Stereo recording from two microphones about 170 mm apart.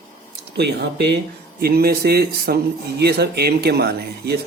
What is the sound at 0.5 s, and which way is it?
Speech, 80° right.